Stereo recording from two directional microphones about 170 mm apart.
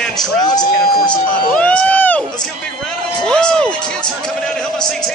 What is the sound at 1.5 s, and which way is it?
Run, 10° left (ahead or behind).